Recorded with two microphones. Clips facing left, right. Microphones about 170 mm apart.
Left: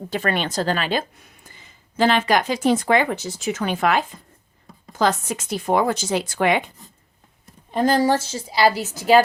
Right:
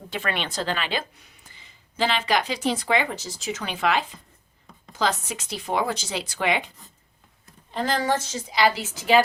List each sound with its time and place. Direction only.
0.1 s speech: 40° left (ahead or behind)
7.9 s a woman's voice: 35° left (ahead or behind)